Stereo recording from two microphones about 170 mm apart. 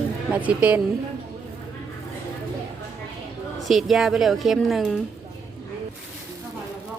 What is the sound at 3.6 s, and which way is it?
Speech, centre (ahead or behind).